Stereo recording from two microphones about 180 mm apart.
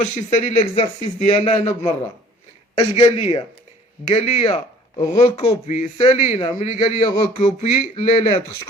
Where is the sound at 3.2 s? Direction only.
35° left (ahead or behind).